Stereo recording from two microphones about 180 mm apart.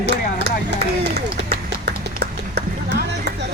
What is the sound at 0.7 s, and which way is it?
Speech, 70° right (ahead or behind).